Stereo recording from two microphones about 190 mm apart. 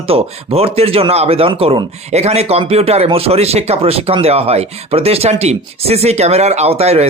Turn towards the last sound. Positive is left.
turn(degrees=-35)  # may be behind; listen again after turning